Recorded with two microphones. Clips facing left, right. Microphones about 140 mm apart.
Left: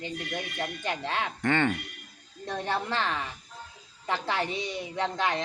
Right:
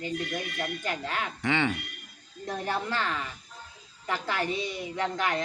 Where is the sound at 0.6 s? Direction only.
25° left (ahead or behind).